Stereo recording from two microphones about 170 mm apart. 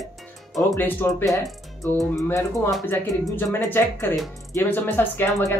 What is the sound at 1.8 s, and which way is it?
Speech, centre (ahead or behind).